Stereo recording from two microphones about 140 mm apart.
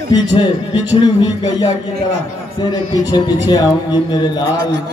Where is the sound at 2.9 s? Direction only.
30° left (ahead or behind).